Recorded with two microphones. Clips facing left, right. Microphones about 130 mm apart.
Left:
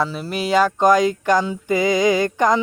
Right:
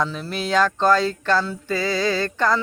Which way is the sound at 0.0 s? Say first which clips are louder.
Left 2 dB; 10° left (ahead or behind).